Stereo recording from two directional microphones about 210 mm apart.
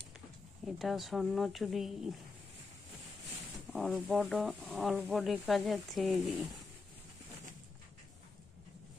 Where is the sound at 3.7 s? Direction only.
Centre (ahead or behind).